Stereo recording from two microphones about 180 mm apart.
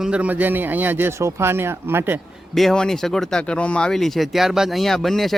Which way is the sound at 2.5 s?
Centre (ahead or behind).